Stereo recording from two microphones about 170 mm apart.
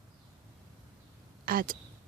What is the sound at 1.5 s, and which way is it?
Speech, 55° right (ahead or behind).